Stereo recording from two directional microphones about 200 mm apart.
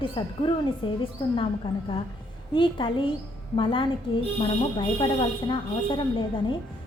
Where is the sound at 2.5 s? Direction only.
25° left (ahead or behind).